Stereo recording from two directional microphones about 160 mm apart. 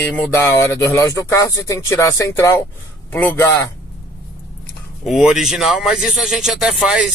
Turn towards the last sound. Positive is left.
turn(degrees=-5)  # may be behind; listen again after turning